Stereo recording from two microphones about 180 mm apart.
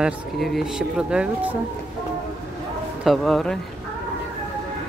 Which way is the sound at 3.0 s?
Centre (ahead or behind).